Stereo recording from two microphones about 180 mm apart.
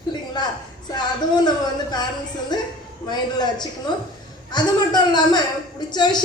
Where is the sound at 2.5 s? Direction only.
25° left (ahead or behind).